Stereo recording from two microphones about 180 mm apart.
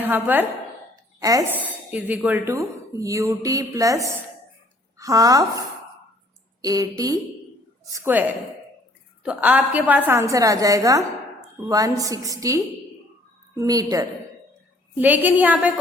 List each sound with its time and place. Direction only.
0.0 s a woman's voice: 10° right (ahead or behind)
13.6 s a woman's voice: 20° right (ahead or behind)
14.9 s a woman's voice: 10° right (ahead or behind)